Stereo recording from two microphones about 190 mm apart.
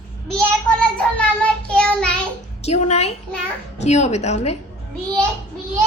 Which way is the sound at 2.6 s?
35° left (ahead or behind).